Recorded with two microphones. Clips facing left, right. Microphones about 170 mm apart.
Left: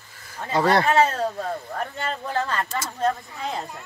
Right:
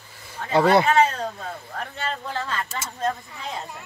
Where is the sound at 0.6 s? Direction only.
5° right (ahead or behind).